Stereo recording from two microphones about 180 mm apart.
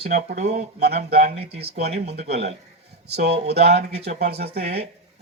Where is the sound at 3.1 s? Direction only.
65° right (ahead or behind).